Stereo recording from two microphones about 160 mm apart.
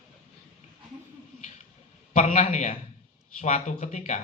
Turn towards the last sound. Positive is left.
turn(degrees=50)  # may be behind; listen again after turning